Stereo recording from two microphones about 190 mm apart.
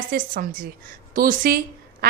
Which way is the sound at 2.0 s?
55° right (ahead or behind).